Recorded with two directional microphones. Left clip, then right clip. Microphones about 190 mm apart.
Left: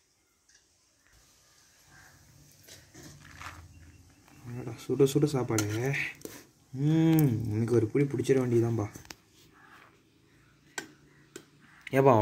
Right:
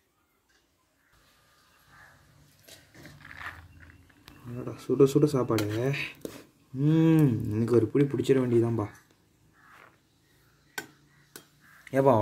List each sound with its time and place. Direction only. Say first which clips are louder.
2.6 s dog: right 1 dB; 5° right (ahead or behind)
4.7 s speech: right 3 dB; centre (ahead or behind)
11.8 s speech: even; 15° left (ahead or behind)